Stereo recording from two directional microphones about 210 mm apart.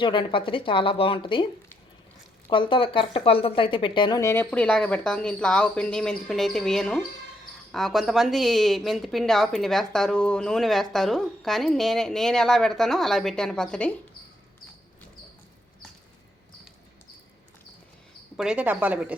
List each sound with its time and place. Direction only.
0.0 s a woman's voice: 25° left (ahead or behind)
2.5 s a woman's voice: 25° left (ahead or behind); by 13.9 s 5° left (ahead or behind)
18.3 s a woman's voice: 5° right (ahead or behind)